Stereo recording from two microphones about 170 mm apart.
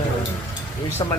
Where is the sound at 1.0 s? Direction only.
25° left (ahead or behind).